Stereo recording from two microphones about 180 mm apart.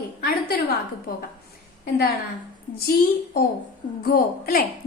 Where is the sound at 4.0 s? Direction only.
55° left (ahead or behind).